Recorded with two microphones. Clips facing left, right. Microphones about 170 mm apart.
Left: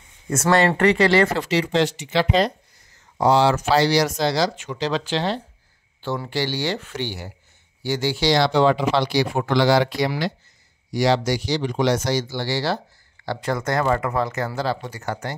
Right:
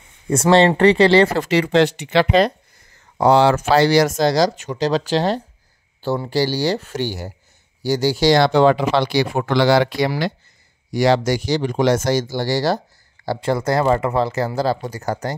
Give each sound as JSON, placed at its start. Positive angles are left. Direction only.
{"t": 0.3, "sound": "speech", "side_deg": -30}
{"t": 1.4, "sound": "speech", "side_deg": -60}